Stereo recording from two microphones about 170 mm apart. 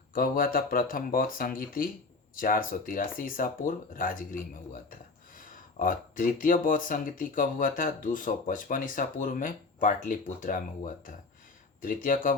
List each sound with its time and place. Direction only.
0.1 s speech: 60° left (ahead or behind)